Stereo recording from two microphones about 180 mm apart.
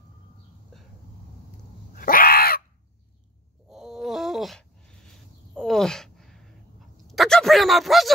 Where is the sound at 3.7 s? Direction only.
5° right (ahead or behind).